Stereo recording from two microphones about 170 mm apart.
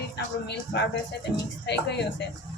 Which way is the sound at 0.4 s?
90° left.